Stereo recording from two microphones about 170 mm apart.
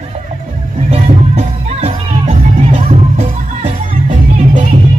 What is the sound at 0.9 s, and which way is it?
Music, 35° right (ahead or behind).